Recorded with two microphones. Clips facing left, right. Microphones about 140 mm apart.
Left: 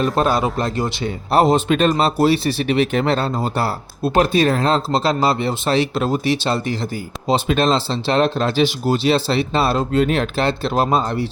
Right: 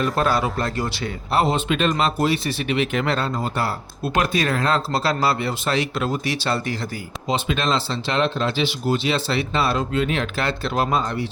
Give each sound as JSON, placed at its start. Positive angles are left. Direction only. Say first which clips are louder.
{"t": 0.0, "sound": "a man's voice", "louder": "left 3 dB", "side_deg": 20}
{"t": 1.3, "sound": "speech", "louder": "left 6 dB", "side_deg": 40}
{"t": 7.3, "sound": "speech", "louder": "left 6 dB", "side_deg": 40}
{"t": 10.3, "sound": "a man's voice", "louder": "left 4 dB", "side_deg": 30}